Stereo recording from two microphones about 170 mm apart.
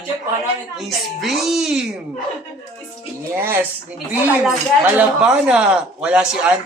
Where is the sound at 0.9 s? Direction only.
Centre (ahead or behind).